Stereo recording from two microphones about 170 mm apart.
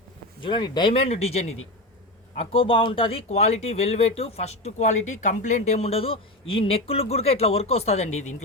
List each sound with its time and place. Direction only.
0.4 s speech: 25° left (ahead or behind)